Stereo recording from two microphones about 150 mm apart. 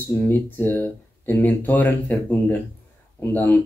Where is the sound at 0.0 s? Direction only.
15° left (ahead or behind).